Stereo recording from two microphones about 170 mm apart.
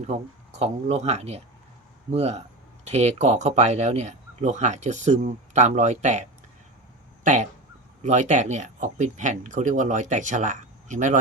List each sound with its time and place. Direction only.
0.1 s speech: 40° right (ahead or behind)
8.0 s speech: 45° right (ahead or behind)